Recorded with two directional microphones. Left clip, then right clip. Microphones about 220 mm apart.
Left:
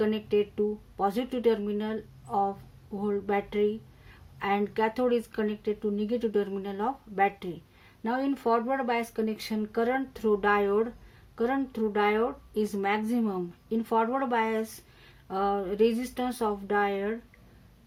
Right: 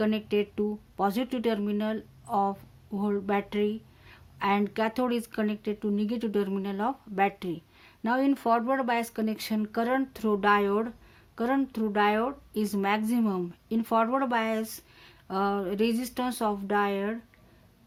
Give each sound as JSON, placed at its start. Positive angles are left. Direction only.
{"t": 0.0, "sound": "a woman's voice", "side_deg": -40}